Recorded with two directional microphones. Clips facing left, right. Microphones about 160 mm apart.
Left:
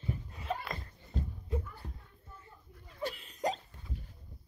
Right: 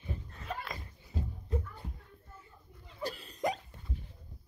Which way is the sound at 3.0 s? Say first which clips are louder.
Even; 40° right (ahead or behind).